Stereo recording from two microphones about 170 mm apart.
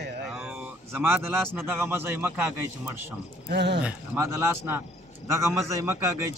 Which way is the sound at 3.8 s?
15° right (ahead or behind).